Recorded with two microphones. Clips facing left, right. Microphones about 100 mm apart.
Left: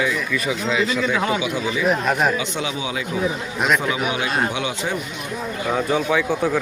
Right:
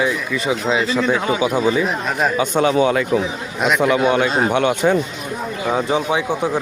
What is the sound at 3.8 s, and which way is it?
Speech, 70° right (ahead or behind).